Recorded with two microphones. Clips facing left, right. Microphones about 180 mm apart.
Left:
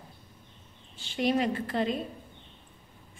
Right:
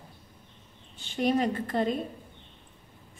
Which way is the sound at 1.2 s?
45° right (ahead or behind).